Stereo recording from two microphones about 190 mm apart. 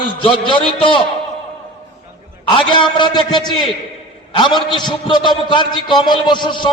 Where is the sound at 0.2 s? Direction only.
25° left (ahead or behind).